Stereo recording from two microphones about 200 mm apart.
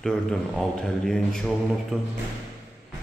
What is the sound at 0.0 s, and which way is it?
Speech, centre (ahead or behind).